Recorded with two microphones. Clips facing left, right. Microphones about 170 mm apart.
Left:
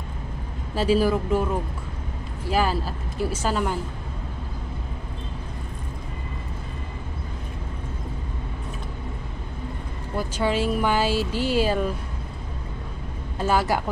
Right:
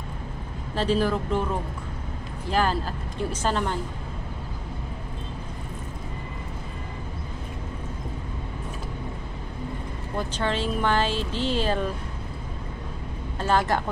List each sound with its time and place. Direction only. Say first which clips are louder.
0.7 s speech: left 3 dB; 10° left (ahead or behind)
2.4 s speech: left 1 dB; 5° left (ahead or behind)
10.1 s speech: left 3 dB; 10° left (ahead or behind)
13.4 s speech: left 1 dB; 10° left (ahead or behind)